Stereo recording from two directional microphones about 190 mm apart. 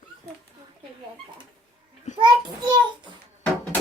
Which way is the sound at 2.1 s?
25° right (ahead or behind).